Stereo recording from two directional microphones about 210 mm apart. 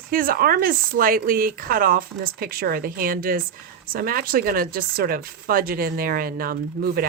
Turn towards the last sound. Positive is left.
turn(degrees=-45)  # may be behind; listen again after turning